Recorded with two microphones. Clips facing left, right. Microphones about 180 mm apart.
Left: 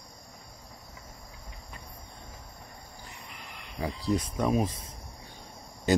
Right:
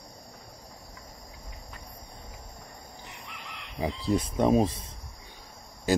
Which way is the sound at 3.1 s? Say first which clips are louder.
Right 2 dB; 85° right.